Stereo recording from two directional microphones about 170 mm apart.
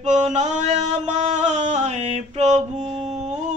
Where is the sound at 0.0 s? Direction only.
45° right (ahead or behind).